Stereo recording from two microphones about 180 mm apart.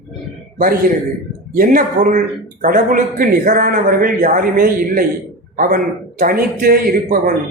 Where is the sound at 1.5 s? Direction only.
50° right (ahead or behind).